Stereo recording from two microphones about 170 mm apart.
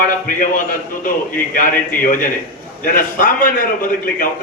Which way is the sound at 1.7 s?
10° left (ahead or behind).